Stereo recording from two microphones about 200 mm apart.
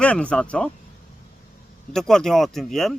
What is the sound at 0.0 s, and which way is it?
Speech, 5° left (ahead or behind).